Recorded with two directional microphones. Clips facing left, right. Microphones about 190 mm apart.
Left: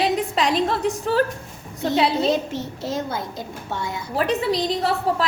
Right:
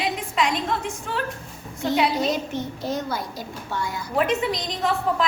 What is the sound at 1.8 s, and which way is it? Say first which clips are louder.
A woman's voice: left 2 dB; 25° left (ahead or behind).